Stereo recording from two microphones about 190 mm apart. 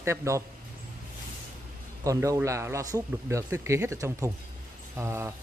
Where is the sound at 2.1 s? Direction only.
15° right (ahead or behind).